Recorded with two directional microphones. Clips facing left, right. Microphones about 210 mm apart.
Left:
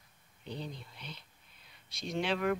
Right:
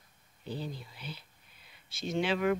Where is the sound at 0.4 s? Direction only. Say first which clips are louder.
Right 3 dB; 5° right (ahead or behind).